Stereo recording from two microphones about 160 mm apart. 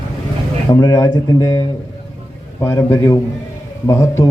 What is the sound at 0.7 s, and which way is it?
A man's voice, 25° left (ahead or behind).